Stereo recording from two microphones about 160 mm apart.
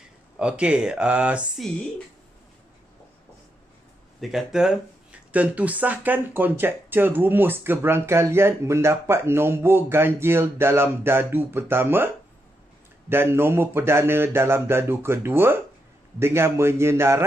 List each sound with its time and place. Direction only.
0.4 s speech: 5° right (ahead or behind)
4.2 s speech: centre (ahead or behind)
13.1 s speech: 15° right (ahead or behind)